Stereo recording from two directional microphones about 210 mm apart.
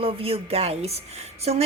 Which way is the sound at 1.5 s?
30° right (ahead or behind).